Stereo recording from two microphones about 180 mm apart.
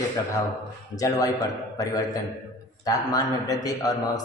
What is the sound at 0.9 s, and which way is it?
Speech, 20° left (ahead or behind).